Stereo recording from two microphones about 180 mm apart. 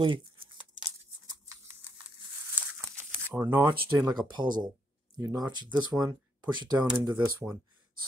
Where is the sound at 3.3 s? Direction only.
10° right (ahead or behind).